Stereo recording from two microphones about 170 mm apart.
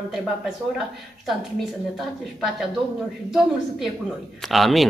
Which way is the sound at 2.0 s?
Centre (ahead or behind).